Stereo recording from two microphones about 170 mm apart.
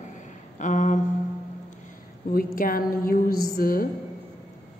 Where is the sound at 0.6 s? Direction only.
45° left (ahead or behind).